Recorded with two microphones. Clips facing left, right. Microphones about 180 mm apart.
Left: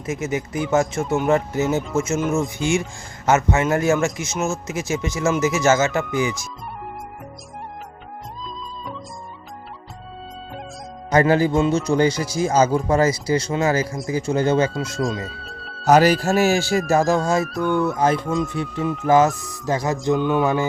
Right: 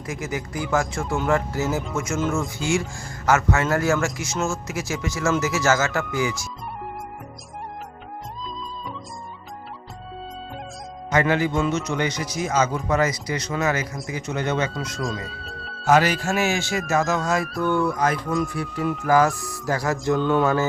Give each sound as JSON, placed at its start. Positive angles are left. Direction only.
{"t": 0.0, "sound": "speech", "side_deg": 20}
{"t": 11.1, "sound": "speech", "side_deg": 35}
{"t": 15.4, "sound": "music", "side_deg": 0}
{"t": 15.8, "sound": "speech", "side_deg": 40}
{"t": 19.6, "sound": "music", "side_deg": 20}